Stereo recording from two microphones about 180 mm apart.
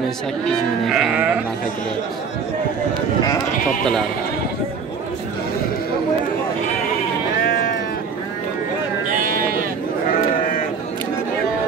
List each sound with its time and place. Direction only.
0.5 s sheep: centre (ahead or behind)
7.4 s sheep: 50° left (ahead or behind)
9.1 s sheep: 50° right (ahead or behind)